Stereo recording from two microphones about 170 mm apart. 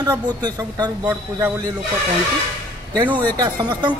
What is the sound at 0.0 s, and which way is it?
Speech, 25° right (ahead or behind).